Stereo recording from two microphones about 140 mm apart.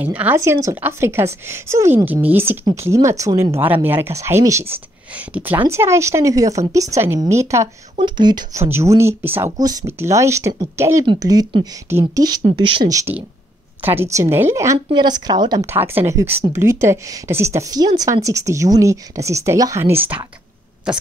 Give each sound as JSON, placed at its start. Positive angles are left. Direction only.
{"t": 0.0, "sound": "speech", "side_deg": -10}
{"t": 8.0, "sound": "speech", "side_deg": -30}
{"t": 8.7, "sound": "speech", "side_deg": -20}
{"t": 12.8, "sound": "speech", "side_deg": -25}
{"t": 14.9, "sound": "speech", "side_deg": -30}
{"t": 15.6, "sound": "speech", "side_deg": -15}